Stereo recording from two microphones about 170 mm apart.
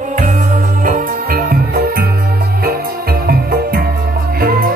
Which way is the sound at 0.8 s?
60° right (ahead or behind).